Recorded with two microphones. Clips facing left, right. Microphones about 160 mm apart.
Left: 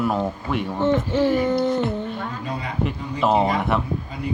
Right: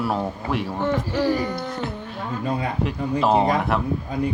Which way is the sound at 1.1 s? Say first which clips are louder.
Left 4 dB; 25° left (ahead or behind).